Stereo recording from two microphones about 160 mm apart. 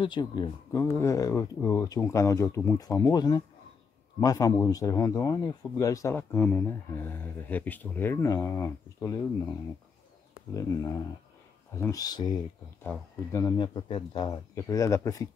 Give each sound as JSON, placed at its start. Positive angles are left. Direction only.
{"t": 0.0, "sound": "speech", "side_deg": 30}
{"t": 12.8, "sound": "speech", "side_deg": 15}
{"t": 13.6, "sound": "speech", "side_deg": 30}